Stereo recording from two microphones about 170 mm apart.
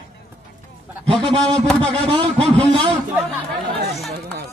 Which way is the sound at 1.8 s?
30° right (ahead or behind).